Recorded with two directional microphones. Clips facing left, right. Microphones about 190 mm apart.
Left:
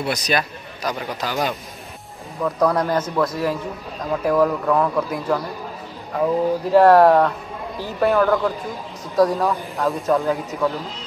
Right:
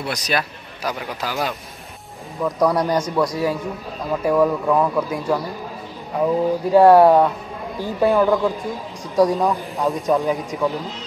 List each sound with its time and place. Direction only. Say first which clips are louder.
0.0 s a man's voice: left 2 dB; centre (ahead or behind)